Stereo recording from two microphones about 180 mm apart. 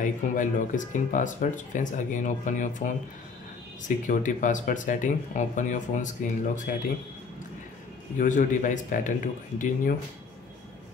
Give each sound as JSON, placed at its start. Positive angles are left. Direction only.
{"t": 0.0, "sound": "speech", "side_deg": 45}
{"t": 8.2, "sound": "speech", "side_deg": 45}